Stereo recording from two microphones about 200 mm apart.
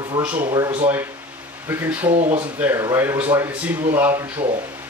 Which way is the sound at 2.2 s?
35° right (ahead or behind).